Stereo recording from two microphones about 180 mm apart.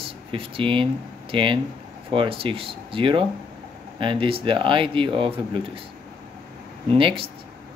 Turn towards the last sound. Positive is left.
turn(degrees=-30)  # may be behind; listen again after turning